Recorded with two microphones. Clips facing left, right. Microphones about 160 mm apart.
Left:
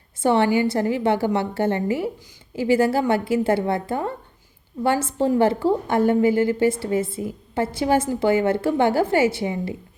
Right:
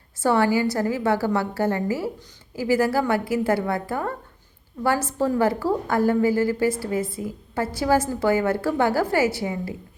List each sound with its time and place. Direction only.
0.2 s a woman's voice: 20° left (ahead or behind)